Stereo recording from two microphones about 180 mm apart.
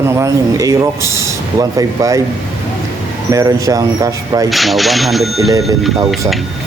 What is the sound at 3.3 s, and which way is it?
Speech, 20° right (ahead or behind).